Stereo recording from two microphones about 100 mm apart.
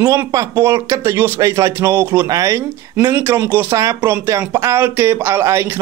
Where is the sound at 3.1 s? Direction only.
20° right (ahead or behind).